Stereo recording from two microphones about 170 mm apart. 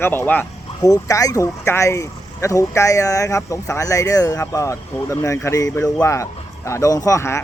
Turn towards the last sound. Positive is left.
turn(degrees=15)  # may be behind; listen again after turning